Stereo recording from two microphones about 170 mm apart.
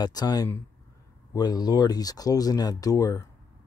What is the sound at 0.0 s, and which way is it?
Speech, 25° left (ahead or behind).